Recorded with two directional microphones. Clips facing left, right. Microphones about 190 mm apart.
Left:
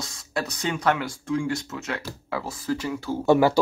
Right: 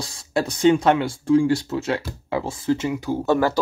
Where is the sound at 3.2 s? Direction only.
10° left (ahead or behind).